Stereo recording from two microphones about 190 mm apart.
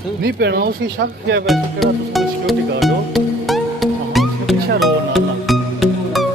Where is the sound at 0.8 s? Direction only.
70° right (ahead or behind).